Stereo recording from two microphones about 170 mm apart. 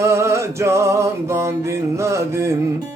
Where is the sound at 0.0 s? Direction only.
15° right (ahead or behind).